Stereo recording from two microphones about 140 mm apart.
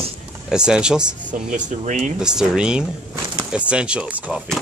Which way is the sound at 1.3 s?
65° right (ahead or behind).